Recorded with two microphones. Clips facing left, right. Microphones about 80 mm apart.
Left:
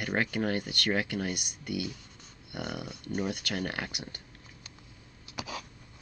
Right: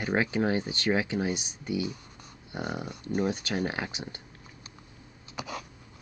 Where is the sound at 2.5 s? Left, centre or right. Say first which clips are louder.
Right 3 dB; right.